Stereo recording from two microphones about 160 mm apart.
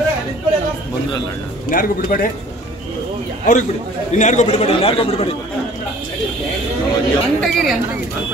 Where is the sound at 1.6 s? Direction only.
60° left (ahead or behind).